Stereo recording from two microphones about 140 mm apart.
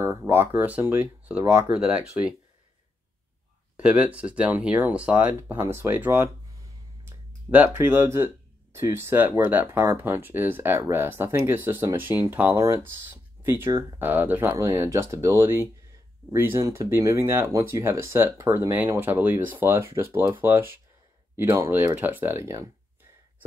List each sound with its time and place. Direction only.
0.2 s speech: 15° right (ahead or behind)
3.7 s speech: 10° right (ahead or behind)
13.7 s speech: 30° right (ahead or behind)
13.9 s speech: 15° right (ahead or behind)